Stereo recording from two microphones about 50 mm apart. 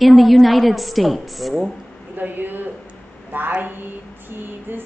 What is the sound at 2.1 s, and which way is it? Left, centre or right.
Speech, right.